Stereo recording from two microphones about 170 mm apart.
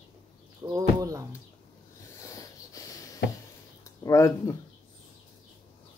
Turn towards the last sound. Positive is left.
turn(degrees=15)  # may be behind; listen again after turning